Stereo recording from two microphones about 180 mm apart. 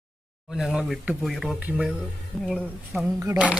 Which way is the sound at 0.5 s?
Centre (ahead or behind).